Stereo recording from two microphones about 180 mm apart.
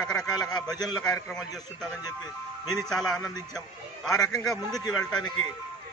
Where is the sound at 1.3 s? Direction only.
5° left (ahead or behind).